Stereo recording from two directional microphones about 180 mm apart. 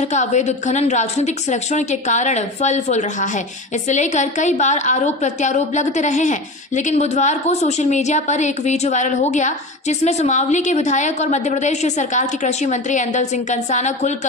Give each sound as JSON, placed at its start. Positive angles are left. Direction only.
{"t": 0.0, "sound": "a woman's voice", "side_deg": 40}